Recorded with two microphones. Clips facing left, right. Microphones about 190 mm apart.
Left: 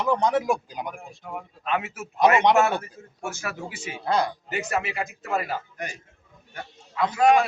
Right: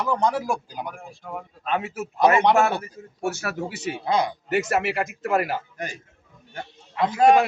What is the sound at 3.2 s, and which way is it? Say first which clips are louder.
Speech: right 5 dB; 65° right (ahead or behind).